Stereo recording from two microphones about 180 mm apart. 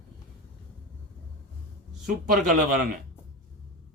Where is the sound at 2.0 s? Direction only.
45° right (ahead or behind).